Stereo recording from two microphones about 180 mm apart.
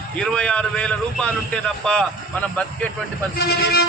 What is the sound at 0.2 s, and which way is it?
A man's voice, 5° left (ahead or behind).